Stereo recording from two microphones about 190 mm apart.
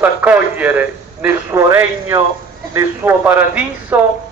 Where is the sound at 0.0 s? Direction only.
10° right (ahead or behind).